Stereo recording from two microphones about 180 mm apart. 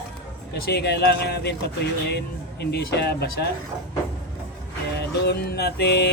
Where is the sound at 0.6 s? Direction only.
65° left (ahead or behind).